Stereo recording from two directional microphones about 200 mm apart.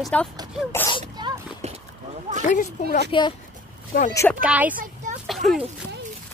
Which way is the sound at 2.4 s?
40° left (ahead or behind).